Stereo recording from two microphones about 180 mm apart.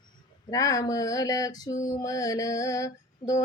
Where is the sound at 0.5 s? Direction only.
20° left (ahead or behind).